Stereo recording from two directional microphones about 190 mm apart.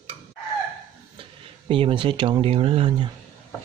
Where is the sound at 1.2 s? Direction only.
30° right (ahead or behind).